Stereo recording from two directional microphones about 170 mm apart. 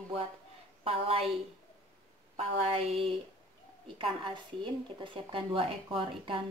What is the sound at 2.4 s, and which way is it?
Speech, 35° right (ahead or behind).